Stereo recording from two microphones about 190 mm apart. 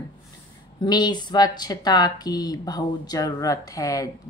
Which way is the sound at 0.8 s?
20° left (ahead or behind).